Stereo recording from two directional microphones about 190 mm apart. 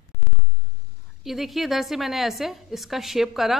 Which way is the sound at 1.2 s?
Centre (ahead or behind).